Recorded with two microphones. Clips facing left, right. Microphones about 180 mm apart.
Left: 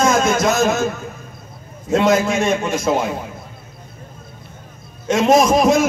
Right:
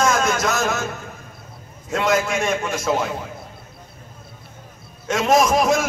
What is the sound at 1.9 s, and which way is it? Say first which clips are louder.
A man's voice: left 5 dB; 25° left (ahead or behind).